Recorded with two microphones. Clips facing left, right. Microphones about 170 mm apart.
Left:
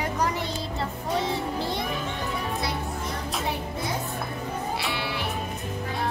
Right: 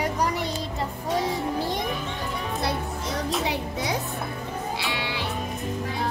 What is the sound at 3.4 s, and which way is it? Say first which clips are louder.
Music: right 2 dB; 90° right.